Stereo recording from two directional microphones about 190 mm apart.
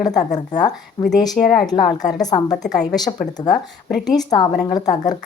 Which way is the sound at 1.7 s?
20° left (ahead or behind).